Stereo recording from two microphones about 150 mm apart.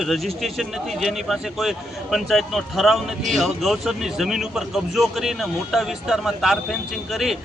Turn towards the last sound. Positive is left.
turn(degrees=0)  # may be behind; listen again after turning